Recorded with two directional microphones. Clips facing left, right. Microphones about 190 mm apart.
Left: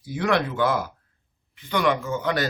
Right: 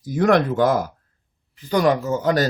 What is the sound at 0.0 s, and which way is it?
Speech, 45° right (ahead or behind).